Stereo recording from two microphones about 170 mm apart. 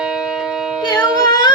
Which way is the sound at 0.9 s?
25° left (ahead or behind).